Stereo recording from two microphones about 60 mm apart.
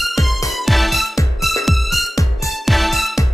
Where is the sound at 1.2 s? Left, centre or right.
Left.